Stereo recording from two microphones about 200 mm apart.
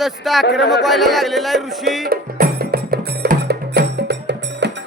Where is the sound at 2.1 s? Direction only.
50° right (ahead or behind).